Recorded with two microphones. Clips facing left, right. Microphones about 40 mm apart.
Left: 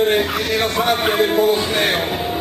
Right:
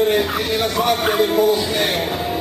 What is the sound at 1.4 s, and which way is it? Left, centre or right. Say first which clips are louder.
Music: even; left.